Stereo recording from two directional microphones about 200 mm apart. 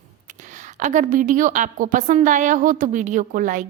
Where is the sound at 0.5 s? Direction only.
40° right (ahead or behind).